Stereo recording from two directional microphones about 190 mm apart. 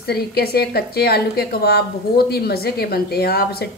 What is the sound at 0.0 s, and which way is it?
A woman's voice, 55° left (ahead or behind).